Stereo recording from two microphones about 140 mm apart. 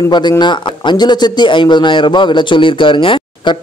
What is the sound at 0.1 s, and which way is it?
Speech, 30° left (ahead or behind).